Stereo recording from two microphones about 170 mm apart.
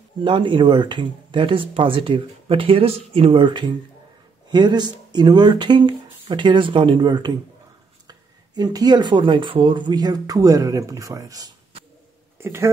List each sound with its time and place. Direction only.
0.2 s speech: 30° right (ahead or behind)